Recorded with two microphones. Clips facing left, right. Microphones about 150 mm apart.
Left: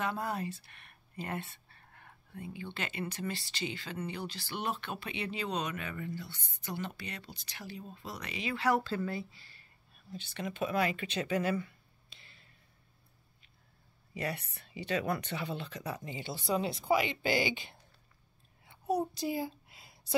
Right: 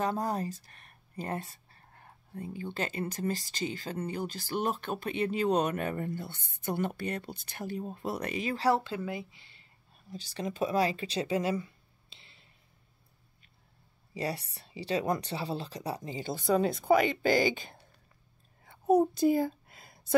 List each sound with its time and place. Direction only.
0.0 s speech: 40° right (ahead or behind)
8.6 s speech: 25° right (ahead or behind)
8.9 s speech: 15° right (ahead or behind)
10.1 s speech: 35° right (ahead or behind)
14.1 s speech: 35° right (ahead or behind)
18.6 s a sound: 50° right (ahead or behind)